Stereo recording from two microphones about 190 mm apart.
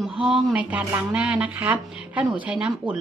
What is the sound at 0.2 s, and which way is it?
Speech, 5° right (ahead or behind).